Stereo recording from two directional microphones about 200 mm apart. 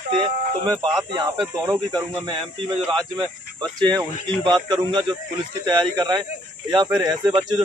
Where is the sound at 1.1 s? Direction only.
25° right (ahead or behind).